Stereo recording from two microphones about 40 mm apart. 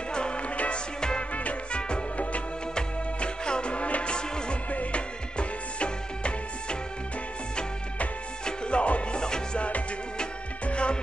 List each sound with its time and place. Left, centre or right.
0.1 s music: left
8.5 s music: left
9.2 s music: centre
9.6 s music: left